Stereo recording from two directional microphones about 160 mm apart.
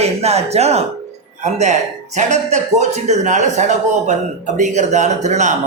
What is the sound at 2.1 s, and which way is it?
A man's voice, 45° right (ahead or behind).